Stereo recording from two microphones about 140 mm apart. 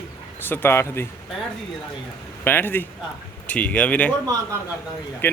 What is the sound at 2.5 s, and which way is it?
Speech, 15° left (ahead or behind).